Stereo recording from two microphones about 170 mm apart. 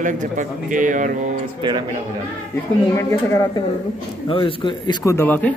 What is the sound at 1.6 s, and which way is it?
Speech, 30° right (ahead or behind).